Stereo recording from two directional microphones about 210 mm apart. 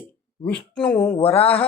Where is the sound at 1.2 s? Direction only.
25° left (ahead or behind).